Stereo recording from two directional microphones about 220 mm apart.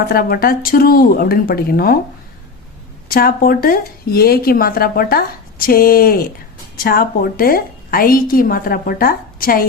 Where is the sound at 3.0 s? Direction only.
40° left (ahead or behind).